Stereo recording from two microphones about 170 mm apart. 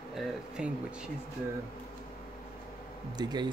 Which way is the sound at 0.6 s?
5° right (ahead or behind).